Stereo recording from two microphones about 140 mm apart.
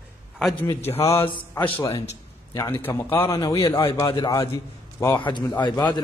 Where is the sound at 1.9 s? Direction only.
50° left (ahead or behind).